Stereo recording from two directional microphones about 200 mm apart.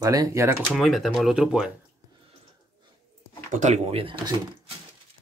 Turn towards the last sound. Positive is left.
turn(degrees=-25)  # may be behind; listen again after turning